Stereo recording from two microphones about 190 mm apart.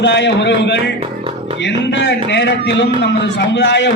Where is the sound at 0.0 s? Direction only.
65° left (ahead or behind).